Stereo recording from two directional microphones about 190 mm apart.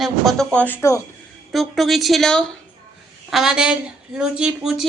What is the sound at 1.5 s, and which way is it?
Speech, centre (ahead or behind).